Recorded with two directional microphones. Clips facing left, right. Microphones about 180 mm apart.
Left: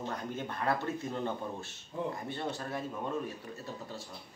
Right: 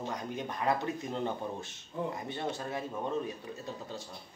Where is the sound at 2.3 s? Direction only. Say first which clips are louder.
Right 1 dB; 20° right (ahead or behind).